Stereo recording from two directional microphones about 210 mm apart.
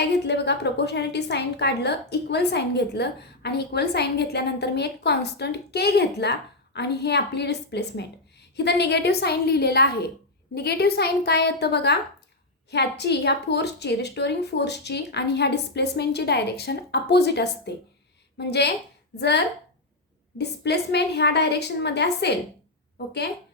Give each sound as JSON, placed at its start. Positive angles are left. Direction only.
{"t": 0.1, "sound": "a woman's voice", "side_deg": 55}
{"t": 20.4, "sound": "a woman's voice", "side_deg": 50}